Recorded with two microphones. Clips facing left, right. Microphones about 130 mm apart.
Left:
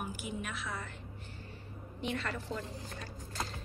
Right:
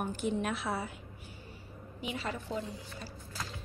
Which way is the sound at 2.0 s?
5° right (ahead or behind).